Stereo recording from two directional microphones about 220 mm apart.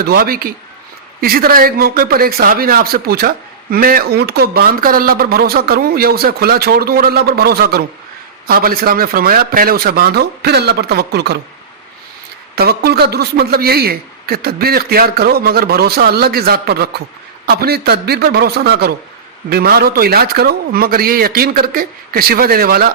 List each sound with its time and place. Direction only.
0.0 s a man's voice: 45° right (ahead or behind)
12.5 s a man's voice: 45° right (ahead or behind)